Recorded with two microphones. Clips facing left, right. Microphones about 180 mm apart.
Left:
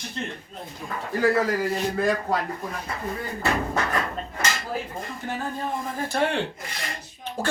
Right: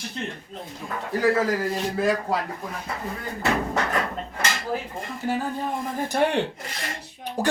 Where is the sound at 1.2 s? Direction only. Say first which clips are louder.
Even; centre (ahead or behind).